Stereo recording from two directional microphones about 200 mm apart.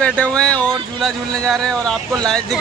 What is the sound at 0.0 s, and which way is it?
Speech, 5° left (ahead or behind).